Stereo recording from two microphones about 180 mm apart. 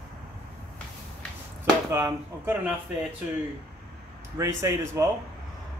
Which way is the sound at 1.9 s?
15° right (ahead or behind).